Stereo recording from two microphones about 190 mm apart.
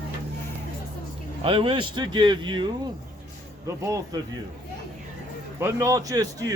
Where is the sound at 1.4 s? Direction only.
25° right (ahead or behind).